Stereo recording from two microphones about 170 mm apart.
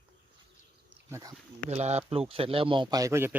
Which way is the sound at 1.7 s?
40° right (ahead or behind).